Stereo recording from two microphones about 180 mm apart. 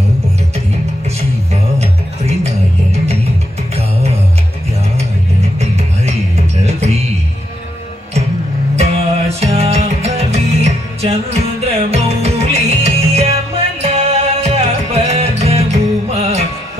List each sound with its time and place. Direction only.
1.5 s music: 35° right (ahead or behind)
6.6 s music: 35° right (ahead or behind)
8.7 s music: 35° right (ahead or behind)